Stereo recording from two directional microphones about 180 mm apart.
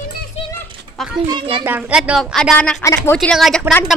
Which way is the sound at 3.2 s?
5° left (ahead or behind).